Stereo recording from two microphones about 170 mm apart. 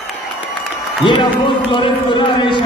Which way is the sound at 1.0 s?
30° left (ahead or behind).